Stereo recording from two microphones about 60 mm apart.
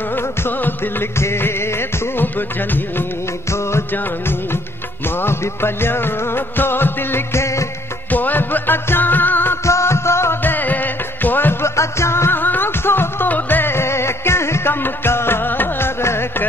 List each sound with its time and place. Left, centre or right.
0.1 s music: left
5.2 s music: left
9.7 s music: left
10.4 s music: left
11.6 s music: left
12.4 s music: left
16.0 s music: left